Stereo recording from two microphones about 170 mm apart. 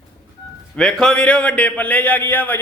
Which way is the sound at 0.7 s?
5° left (ahead or behind).